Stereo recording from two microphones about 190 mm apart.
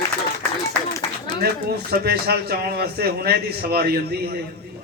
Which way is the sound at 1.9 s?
55° right (ahead or behind).